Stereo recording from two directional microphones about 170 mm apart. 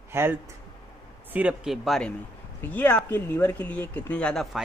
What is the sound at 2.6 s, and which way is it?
A man's voice, 10° left (ahead or behind).